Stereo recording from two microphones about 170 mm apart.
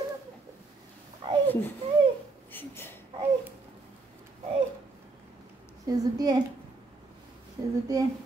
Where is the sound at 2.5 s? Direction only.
10° left (ahead or behind).